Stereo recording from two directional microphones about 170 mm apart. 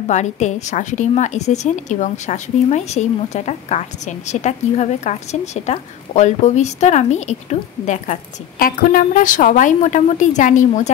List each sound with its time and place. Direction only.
0.1 s speech: 45° left (ahead or behind)